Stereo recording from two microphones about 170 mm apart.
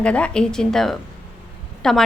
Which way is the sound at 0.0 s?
5° left (ahead or behind).